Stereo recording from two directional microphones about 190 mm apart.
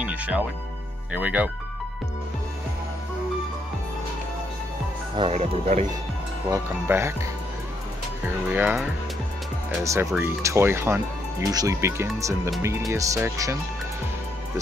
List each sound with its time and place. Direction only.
0.0 s music: 5° right (ahead or behind)
1.1 s speech: 10° right (ahead or behind)
5.1 s speech: 30° right (ahead or behind)
6.5 s speech: 15° right (ahead or behind)
8.5 s speech: 5° right (ahead or behind)
9.8 s speech: 10° right (ahead or behind)